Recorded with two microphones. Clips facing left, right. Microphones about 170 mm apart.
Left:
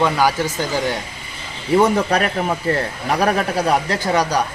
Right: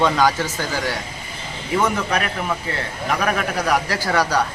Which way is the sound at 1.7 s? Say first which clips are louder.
Left 5 dB; 35° left (ahead or behind).